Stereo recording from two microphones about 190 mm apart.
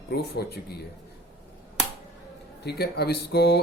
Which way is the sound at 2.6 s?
60° left (ahead or behind).